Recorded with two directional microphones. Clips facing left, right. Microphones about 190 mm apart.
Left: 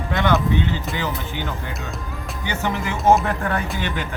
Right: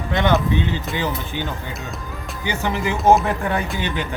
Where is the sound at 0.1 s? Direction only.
20° right (ahead or behind).